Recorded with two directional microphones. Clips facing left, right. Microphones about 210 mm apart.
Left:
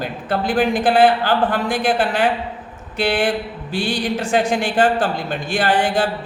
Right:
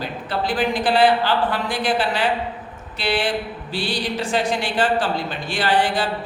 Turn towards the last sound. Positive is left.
turn(degrees=50)  # may be behind; listen again after turning